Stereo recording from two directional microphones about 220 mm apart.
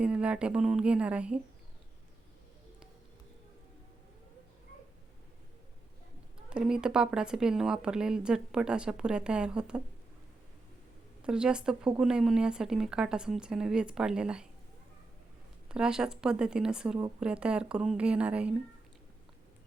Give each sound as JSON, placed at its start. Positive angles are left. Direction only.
{"t": 0.0, "sound": "speech", "side_deg": -5}
{"t": 6.5, "sound": "speech", "side_deg": -5}
{"t": 11.2, "sound": "speech", "side_deg": -5}
{"t": 15.7, "sound": "speech", "side_deg": -5}